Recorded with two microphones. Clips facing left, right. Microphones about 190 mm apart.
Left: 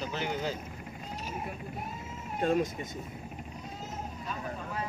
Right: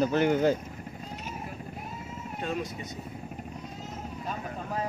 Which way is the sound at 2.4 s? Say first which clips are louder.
Left 6 dB; 45° left (ahead or behind).